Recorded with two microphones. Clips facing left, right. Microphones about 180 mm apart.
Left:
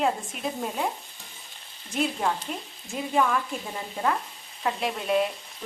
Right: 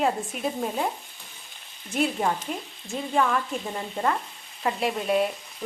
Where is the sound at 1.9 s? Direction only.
5° right (ahead or behind).